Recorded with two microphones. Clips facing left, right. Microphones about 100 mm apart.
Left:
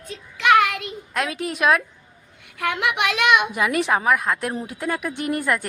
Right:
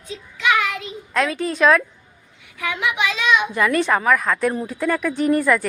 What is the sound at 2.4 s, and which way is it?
A woman's voice, 60° left (ahead or behind).